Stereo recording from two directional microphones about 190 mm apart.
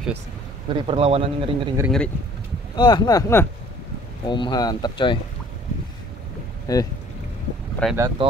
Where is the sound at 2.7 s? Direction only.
25° left (ahead or behind).